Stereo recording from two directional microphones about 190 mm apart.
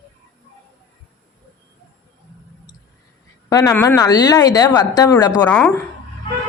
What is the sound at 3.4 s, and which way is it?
Speech, 20° left (ahead or behind).